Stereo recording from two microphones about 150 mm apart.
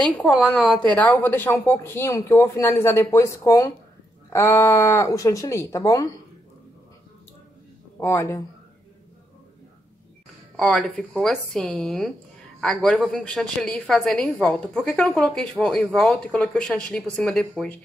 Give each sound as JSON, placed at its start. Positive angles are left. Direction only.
{"t": 0.0, "sound": "a woman's voice", "side_deg": 5}
{"t": 8.0, "sound": "speech", "side_deg": 20}
{"t": 10.5, "sound": "speech", "side_deg": 5}